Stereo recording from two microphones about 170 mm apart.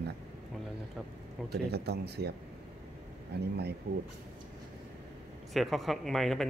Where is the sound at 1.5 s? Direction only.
75° right (ahead or behind).